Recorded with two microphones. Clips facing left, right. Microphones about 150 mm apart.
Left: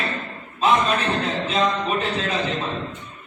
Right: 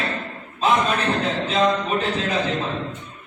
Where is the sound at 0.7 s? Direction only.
Centre (ahead or behind).